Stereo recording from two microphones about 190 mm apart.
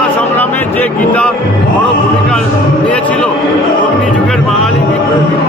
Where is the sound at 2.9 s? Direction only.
5° left (ahead or behind).